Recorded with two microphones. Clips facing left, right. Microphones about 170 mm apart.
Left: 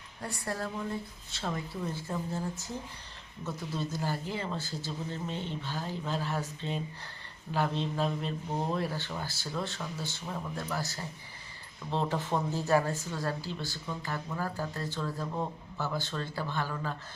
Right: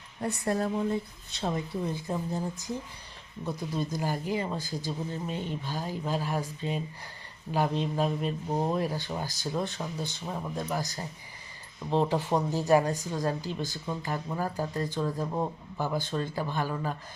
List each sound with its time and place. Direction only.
0.2 s speech: 20° right (ahead or behind)